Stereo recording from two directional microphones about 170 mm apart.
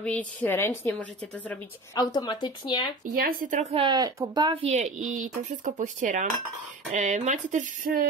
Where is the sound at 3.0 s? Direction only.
55° right (ahead or behind).